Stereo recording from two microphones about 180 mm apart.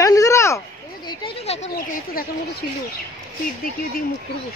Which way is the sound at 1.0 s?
30° left (ahead or behind).